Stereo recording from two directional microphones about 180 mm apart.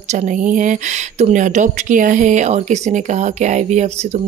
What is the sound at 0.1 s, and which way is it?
Speech, 45° right (ahead or behind).